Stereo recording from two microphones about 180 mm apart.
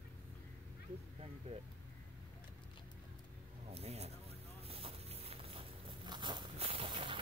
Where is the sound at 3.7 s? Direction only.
35° right (ahead or behind).